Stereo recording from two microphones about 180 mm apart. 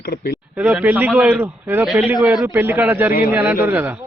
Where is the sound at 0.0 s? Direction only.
60° left (ahead or behind).